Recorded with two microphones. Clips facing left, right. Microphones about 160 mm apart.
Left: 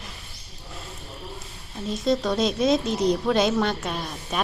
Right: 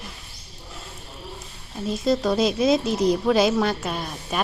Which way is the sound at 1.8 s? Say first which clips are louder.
Right 2 dB; 5° right (ahead or behind).